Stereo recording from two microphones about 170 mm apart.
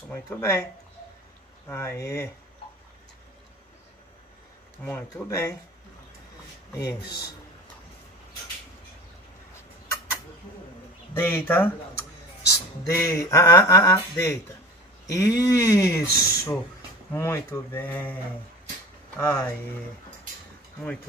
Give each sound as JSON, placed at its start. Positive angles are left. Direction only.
{"t": 0.1, "sound": "speech", "side_deg": 15}
{"t": 1.7, "sound": "speech", "side_deg": 15}
{"t": 4.8, "sound": "speech", "side_deg": 15}
{"t": 6.7, "sound": "speech", "side_deg": 20}
{"t": 11.1, "sound": "speech", "side_deg": 10}
{"t": 19.1, "sound": "speech", "side_deg": 10}